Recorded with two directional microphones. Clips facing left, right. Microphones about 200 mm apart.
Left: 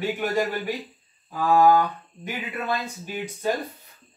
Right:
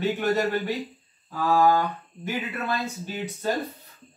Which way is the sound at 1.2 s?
15° left (ahead or behind).